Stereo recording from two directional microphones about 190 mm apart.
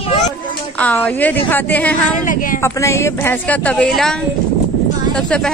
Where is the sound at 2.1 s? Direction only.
45° left (ahead or behind).